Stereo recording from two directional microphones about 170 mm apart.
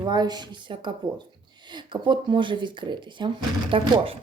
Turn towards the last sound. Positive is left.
turn(degrees=-35)  # may be behind; listen again after turning